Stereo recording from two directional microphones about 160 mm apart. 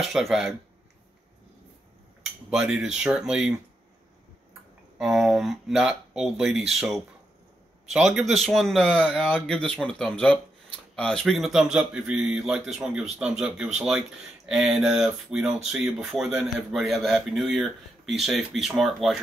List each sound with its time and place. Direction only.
0.1 s speech: centre (ahead or behind)
2.5 s speech: 5° right (ahead or behind)
4.9 s speech: centre (ahead or behind)